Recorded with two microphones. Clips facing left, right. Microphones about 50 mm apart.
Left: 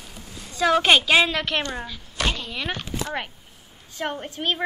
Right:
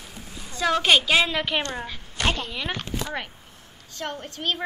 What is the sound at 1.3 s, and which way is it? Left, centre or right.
Speech, centre.